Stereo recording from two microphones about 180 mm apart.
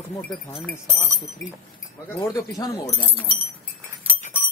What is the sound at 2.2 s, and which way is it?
Speech, 20° left (ahead or behind).